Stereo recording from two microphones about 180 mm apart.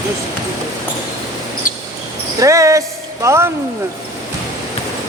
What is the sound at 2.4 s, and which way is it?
Speech, 20° right (ahead or behind).